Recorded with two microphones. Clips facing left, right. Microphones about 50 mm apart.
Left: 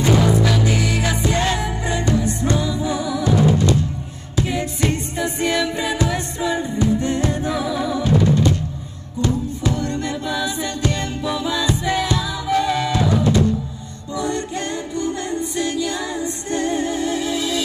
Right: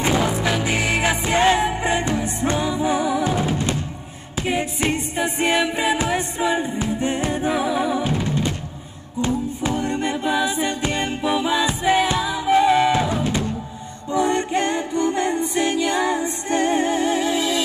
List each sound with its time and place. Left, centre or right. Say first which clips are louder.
0.0 s music: left 3 dB; right